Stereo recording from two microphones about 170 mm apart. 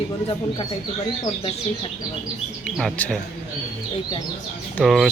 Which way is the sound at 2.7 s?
5° left (ahead or behind).